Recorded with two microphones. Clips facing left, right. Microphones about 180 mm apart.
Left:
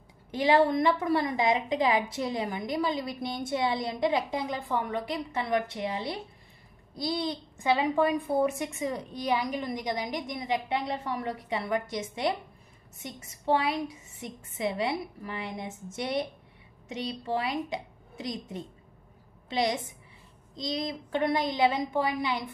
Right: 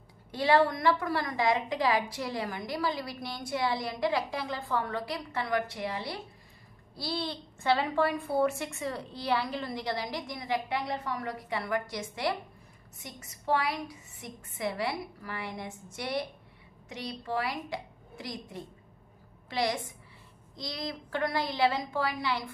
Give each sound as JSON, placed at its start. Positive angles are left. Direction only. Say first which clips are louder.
{"t": 0.3, "sound": "a woman's voice", "louder": "left 2 dB", "side_deg": 20}